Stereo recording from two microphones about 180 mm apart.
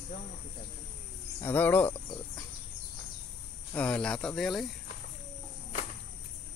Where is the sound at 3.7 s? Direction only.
5° left (ahead or behind).